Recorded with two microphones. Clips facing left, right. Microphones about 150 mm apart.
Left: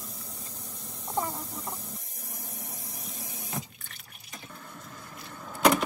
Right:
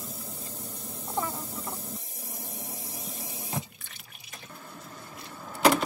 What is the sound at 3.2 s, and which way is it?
Water, 25° right (ahead or behind).